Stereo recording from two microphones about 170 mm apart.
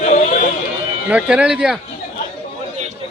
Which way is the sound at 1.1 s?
5° right (ahead or behind).